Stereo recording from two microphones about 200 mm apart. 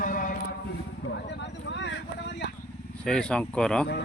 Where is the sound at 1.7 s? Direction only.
65° left (ahead or behind).